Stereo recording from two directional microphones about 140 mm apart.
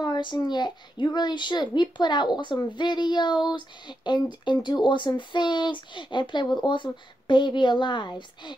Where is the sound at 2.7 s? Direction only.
30° left (ahead or behind).